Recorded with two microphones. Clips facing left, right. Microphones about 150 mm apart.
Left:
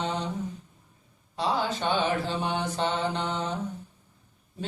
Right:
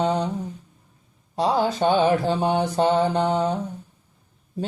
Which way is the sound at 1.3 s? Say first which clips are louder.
Right 6 dB; 40° right (ahead or behind).